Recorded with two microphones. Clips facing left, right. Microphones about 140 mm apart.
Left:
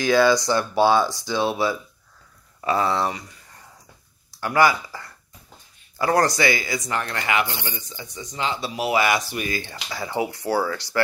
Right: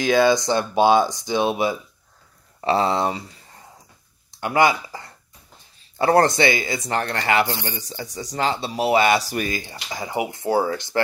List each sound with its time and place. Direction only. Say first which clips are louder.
0.0 s speech: right 1 dB; 20° right (ahead or behind); by 8.5 s 40° right (ahead or behind)
8.5 s speech: right 3 dB; 30° right (ahead or behind)
9.7 s speech: even; 15° right (ahead or behind)